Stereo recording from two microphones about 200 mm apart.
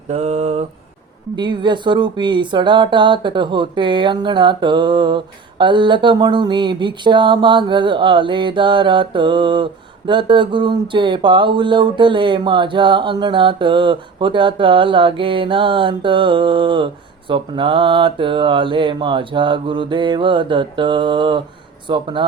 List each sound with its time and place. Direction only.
0.1 s mantra: 30° right (ahead or behind)
1.4 s speech: 25° right (ahead or behind)